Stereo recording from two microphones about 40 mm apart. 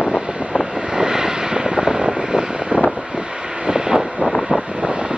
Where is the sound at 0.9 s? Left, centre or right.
Centre.